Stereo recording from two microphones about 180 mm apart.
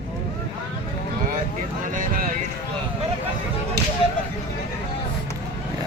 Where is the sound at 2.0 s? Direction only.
50° right (ahead or behind).